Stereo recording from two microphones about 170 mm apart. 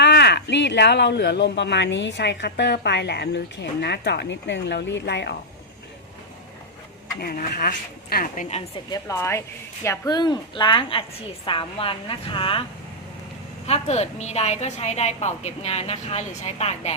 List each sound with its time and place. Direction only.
0.0 s speech: 85° left
7.2 s speech: 65° left (ahead or behind)
8.9 s a woman's voice: 15° left (ahead or behind)
13.7 s a woman's voice: 40° left (ahead or behind)